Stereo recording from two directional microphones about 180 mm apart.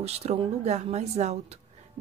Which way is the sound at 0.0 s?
35° right (ahead or behind).